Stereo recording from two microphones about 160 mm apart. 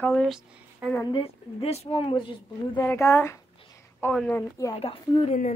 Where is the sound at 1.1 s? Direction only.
40° left (ahead or behind).